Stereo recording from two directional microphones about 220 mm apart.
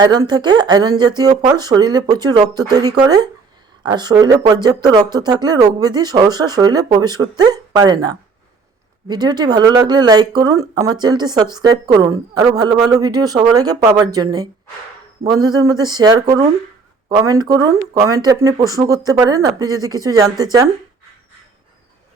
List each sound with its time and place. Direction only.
0.0 s speech: 20° right (ahead or behind)